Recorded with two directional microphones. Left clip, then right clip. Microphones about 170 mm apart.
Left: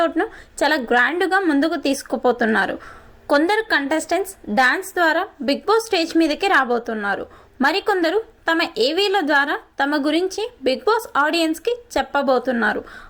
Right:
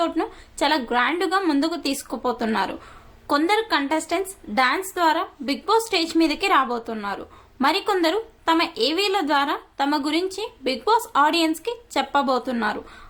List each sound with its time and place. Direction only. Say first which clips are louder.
0.0 s a woman's voice: left 4 dB; 15° left (ahead or behind)